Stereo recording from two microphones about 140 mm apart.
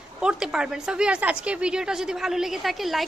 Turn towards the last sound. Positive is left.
turn(degrees=0)  # may be behind; listen again after turning